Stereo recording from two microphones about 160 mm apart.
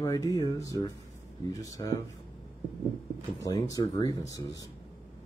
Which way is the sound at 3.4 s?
20° left (ahead or behind).